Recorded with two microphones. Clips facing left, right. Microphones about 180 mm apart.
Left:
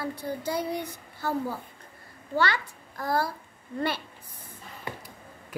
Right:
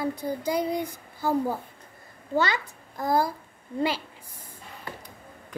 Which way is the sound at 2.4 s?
20° right (ahead or behind).